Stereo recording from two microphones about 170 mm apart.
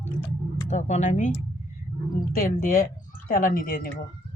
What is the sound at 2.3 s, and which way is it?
Speech, 55° left (ahead or behind).